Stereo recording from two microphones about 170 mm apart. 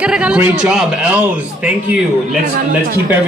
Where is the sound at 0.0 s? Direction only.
5° right (ahead or behind).